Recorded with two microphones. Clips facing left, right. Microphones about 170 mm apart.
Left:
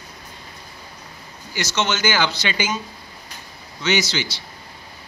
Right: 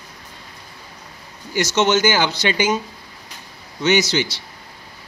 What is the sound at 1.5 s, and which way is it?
Speech, 50° right (ahead or behind).